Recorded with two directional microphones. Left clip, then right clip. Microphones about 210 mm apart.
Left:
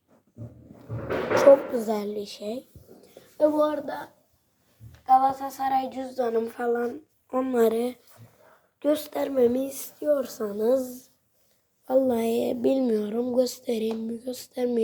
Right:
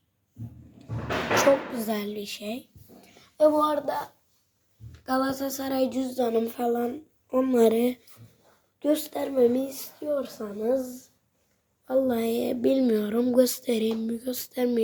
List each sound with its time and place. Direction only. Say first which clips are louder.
1.4 s a woman's voice: left 6 dB; 10° right (ahead or behind)
3.3 s speech: right 1 dB; 25° right (ahead or behind)
5.0 s a woman's voice: left 7 dB; 15° right (ahead or behind)
8.8 s speech: left 1 dB; centre (ahead or behind)
10.1 s a woman's voice: left 4 dB; 30° left (ahead or behind)
10.8 s a woman's voice: left 2 dB; 15° left (ahead or behind); by 14.8 s 5° right (ahead or behind)